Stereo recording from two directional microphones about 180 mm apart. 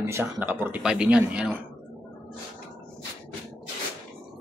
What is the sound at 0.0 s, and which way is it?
Speech, 15° right (ahead or behind).